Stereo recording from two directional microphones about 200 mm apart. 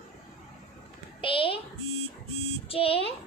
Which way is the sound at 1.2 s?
25° left (ahead or behind).